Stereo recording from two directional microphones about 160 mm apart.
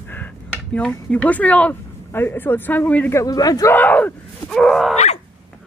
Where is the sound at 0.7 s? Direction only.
10° left (ahead or behind); by 3.7 s 25° left (ahead or behind).